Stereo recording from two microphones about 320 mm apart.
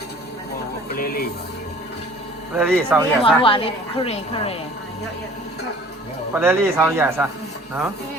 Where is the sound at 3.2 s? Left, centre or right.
Centre.